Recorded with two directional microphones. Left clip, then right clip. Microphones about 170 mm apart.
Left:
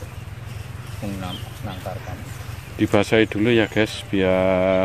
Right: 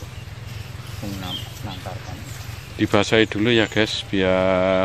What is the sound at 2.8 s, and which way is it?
Speech, 5° left (ahead or behind).